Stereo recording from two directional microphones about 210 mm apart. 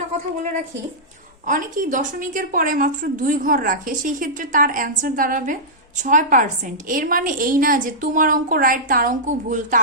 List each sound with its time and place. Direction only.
1.5 s a woman's voice: 40° right (ahead or behind)